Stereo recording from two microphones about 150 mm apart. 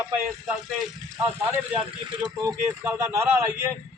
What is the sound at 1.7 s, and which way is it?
Speech, 10° right (ahead or behind).